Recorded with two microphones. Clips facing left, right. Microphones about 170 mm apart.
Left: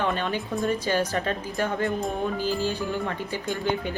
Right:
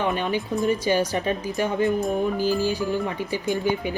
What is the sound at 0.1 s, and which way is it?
Speech, 15° right (ahead or behind).